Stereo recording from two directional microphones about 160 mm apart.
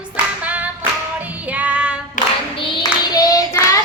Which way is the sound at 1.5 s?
10° right (ahead or behind).